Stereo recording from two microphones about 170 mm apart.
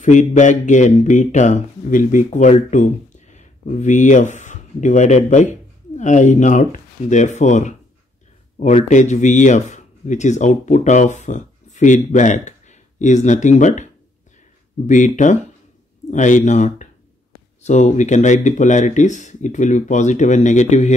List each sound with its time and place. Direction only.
0.0 s speech: 45° left (ahead or behind)
14.9 s speech: 45° left (ahead or behind)